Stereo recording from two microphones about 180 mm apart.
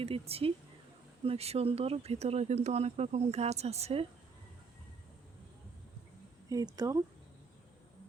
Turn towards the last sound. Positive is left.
turn(degrees=-20)  # may be behind; listen again after turning